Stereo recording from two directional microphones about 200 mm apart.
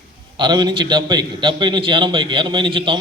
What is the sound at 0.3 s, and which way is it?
A man's voice, 20° right (ahead or behind).